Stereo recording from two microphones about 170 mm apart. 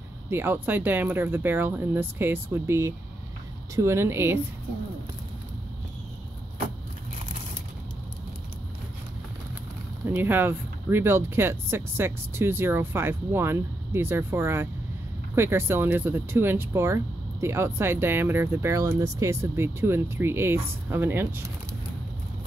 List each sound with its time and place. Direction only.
0.3 s speech: 10° right (ahead or behind)
10.0 s speech: 10° right (ahead or behind)